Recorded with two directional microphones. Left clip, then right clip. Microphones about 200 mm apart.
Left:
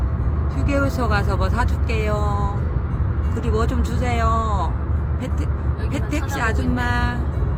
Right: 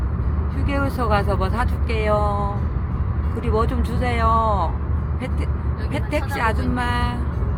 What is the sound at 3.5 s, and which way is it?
Speech, 20° right (ahead or behind).